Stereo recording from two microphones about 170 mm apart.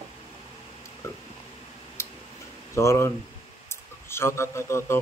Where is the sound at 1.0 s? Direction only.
15° left (ahead or behind).